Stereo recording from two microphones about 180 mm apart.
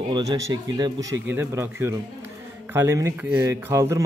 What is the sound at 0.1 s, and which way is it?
Speech, 25° right (ahead or behind).